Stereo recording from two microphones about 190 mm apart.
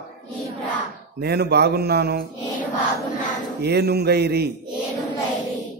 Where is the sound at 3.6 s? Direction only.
60° right (ahead or behind).